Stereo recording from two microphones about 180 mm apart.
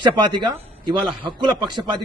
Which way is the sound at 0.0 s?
25° right (ahead or behind).